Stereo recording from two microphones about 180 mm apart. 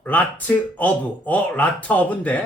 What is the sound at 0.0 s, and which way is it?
Speech, 10° left (ahead or behind).